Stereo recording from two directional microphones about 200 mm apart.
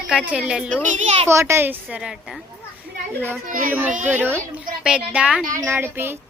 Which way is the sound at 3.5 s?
45° right (ahead or behind).